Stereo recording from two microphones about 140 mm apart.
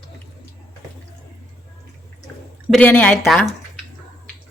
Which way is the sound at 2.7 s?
10° left (ahead or behind).